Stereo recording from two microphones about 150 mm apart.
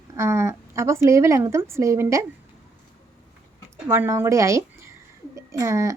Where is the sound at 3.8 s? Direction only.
15° right (ahead or behind).